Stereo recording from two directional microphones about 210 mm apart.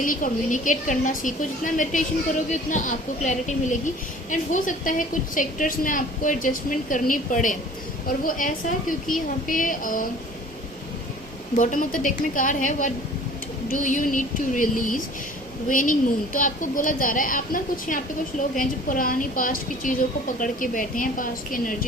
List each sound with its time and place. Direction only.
0.0 s a woman's voice: 40° left (ahead or behind)
11.5 s a woman's voice: 35° left (ahead or behind)